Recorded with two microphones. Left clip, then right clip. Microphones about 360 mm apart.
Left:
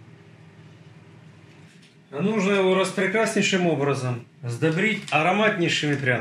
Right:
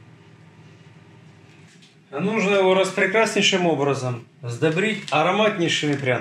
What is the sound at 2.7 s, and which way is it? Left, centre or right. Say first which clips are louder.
Speech: right 4 dB; right.